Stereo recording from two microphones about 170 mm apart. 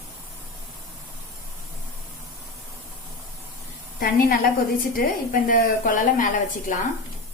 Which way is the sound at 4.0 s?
65° left (ahead or behind).